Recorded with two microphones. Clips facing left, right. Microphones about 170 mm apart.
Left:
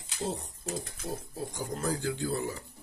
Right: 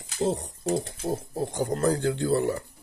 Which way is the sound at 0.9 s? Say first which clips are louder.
Right 9 dB; 30° right (ahead or behind).